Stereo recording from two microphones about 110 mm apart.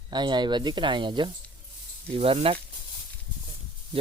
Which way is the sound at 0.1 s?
40° right (ahead or behind).